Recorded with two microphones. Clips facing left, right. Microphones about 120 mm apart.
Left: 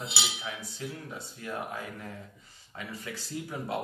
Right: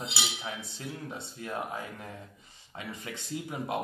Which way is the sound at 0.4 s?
25° right (ahead or behind).